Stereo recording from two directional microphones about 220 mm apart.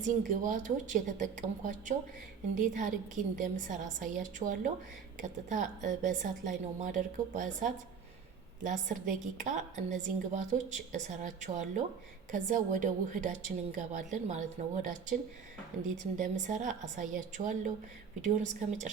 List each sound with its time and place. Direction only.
0.0 s a woman's voice: 35° right (ahead or behind)
16.1 s a woman's voice: 35° right (ahead or behind)